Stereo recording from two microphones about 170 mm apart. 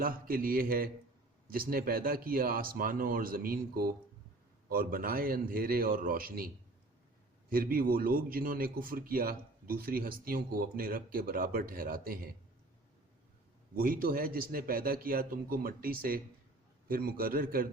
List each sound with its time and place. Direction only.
0.0 s a man's voice: 60° right (ahead or behind)
7.5 s a man's voice: 60° right (ahead or behind)
13.7 s a man's voice: 55° right (ahead or behind)